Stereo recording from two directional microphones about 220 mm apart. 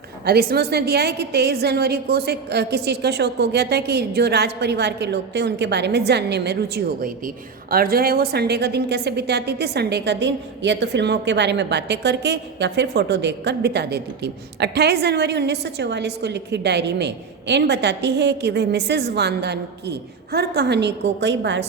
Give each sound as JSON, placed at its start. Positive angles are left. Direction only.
{"t": 0.3, "sound": "a woman's voice", "side_deg": -45}